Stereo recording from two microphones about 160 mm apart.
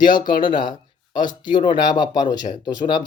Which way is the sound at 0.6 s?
30° left (ahead or behind).